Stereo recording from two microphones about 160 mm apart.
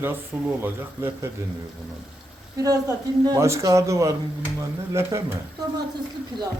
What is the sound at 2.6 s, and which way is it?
Speech, 20° right (ahead or behind).